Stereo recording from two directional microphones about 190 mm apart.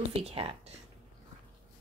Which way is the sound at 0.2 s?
30° right (ahead or behind).